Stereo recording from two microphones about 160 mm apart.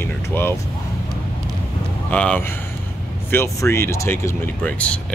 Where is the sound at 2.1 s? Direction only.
10° left (ahead or behind).